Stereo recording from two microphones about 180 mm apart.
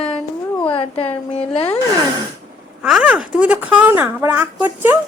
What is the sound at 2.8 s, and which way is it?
A woman's voice, 5° right (ahead or behind).